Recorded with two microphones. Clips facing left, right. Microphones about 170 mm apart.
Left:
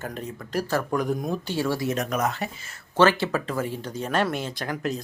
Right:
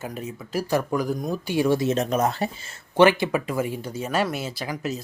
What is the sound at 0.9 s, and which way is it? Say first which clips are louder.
Speech: even; centre (ahead or behind).